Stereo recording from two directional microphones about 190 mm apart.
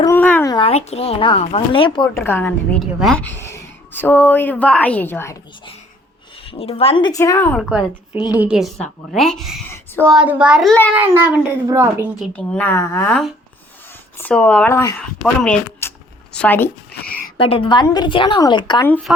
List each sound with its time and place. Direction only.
0.0 s a sound: 10° left (ahead or behind)
0.5 s speech: 30° left (ahead or behind)
2.1 s a woman's voice: 10° left (ahead or behind)
6.3 s speech: 30° left (ahead or behind)
8.4 s a child's voice: 5° right (ahead or behind)
9.6 s a sound: 10° left (ahead or behind)
10.2 s a child's voice: 5° right (ahead or behind)
12.2 s a woman's voice: 5° left (ahead or behind)
14.2 s a woman's voice: 10° left (ahead or behind)
17.3 s speech: 30° left (ahead or behind)